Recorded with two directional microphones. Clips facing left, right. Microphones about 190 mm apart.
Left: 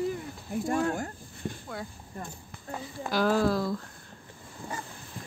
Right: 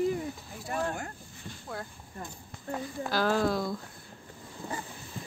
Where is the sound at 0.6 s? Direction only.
45° left (ahead or behind).